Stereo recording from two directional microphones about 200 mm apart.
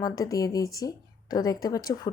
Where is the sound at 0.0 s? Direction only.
15° left (ahead or behind).